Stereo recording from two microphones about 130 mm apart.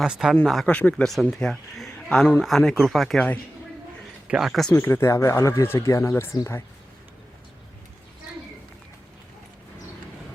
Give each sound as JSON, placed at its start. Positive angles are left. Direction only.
{"t": 0.0, "sound": "speech", "side_deg": -5}
{"t": 4.3, "sound": "speech", "side_deg": -5}
{"t": 4.7, "sound": "speech", "side_deg": 20}